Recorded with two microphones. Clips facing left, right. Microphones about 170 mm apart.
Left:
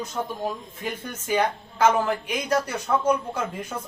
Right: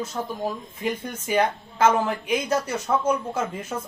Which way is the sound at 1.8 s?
10° right (ahead or behind).